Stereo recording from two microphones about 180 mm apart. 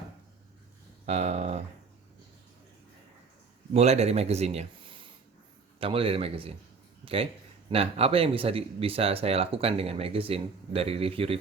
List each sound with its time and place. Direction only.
1.0 s speech: 40° right (ahead or behind)
3.7 s a man's voice: 35° right (ahead or behind)